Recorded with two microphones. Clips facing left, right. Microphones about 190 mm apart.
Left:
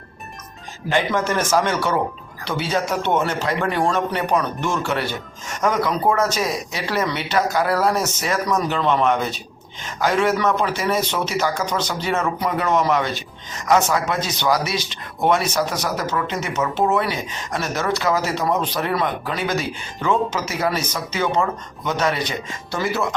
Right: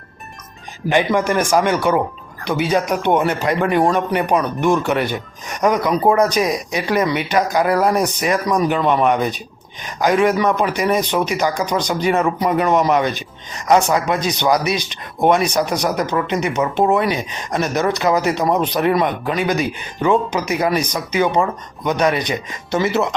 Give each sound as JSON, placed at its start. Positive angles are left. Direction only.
{"t": 0.9, "sound": "a man's voice", "side_deg": -15}